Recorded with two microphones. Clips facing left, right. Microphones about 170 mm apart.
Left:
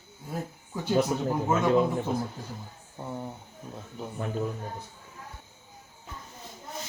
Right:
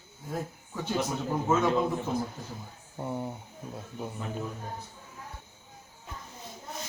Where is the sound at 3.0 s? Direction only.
10° right (ahead or behind).